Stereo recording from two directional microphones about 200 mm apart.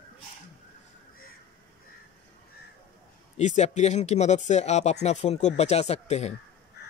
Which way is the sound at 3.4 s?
35° left (ahead or behind).